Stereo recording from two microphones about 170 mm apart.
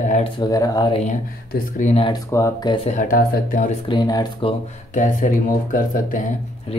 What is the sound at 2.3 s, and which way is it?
Speech, 20° left (ahead or behind).